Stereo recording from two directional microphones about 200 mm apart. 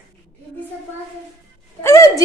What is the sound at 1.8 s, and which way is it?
Speech, 15° left (ahead or behind).